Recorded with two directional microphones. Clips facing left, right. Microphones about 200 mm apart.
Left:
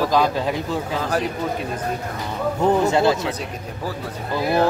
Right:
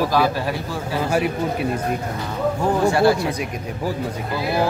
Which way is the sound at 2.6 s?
20° left (ahead or behind).